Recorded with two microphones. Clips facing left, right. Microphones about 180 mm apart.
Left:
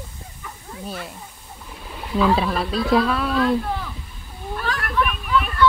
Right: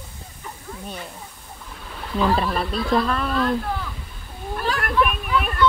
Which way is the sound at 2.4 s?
Centre (ahead or behind).